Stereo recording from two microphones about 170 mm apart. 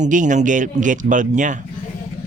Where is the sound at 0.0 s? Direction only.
50° right (ahead or behind).